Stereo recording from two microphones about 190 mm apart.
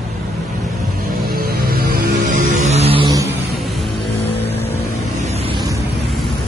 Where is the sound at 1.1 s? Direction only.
50° right (ahead or behind); by 3.2 s 25° right (ahead or behind).